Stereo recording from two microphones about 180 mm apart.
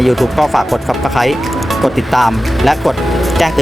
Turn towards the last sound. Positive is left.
turn(degrees=0)  # may be behind; listen again after turning